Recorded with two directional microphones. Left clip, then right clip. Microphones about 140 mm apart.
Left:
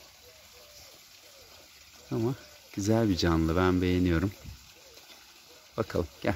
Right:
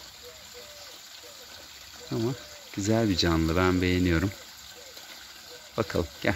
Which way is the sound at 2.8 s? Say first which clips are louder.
Right 2 dB; 30° left (ahead or behind).